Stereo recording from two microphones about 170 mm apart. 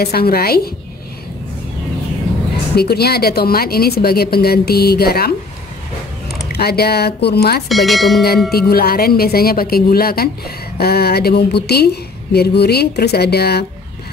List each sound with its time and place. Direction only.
0.0 s speech: 65° left (ahead or behind)
2.7 s a woman's voice: 70° left (ahead or behind)
6.5 s a woman's voice: 70° left (ahead or behind)
7.6 s speech: centre (ahead or behind)
8.5 s a woman's voice: 65° left (ahead or behind)